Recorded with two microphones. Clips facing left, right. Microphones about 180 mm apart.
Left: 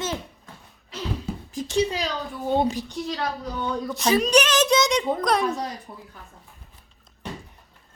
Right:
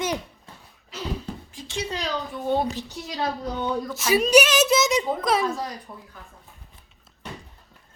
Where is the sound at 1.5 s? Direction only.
40° left (ahead or behind).